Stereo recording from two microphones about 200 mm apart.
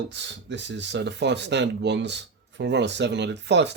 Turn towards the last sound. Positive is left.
turn(degrees=-60)  # may be behind; listen again after turning